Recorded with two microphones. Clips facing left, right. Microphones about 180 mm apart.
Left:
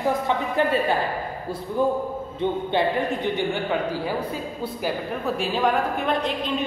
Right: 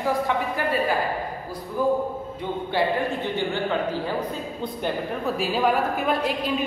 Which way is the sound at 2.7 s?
20° left (ahead or behind).